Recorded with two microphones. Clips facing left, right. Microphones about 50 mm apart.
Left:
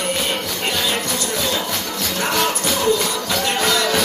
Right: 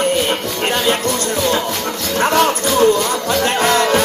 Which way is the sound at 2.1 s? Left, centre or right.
Right.